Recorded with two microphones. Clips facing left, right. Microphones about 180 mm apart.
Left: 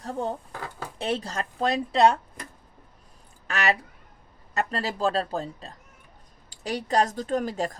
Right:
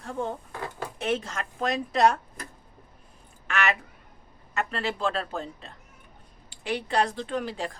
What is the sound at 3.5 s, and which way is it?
Speech, 35° left (ahead or behind).